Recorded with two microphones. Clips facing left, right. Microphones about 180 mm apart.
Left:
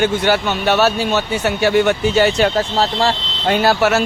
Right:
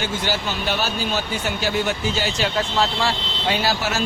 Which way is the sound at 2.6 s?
40° left (ahead or behind).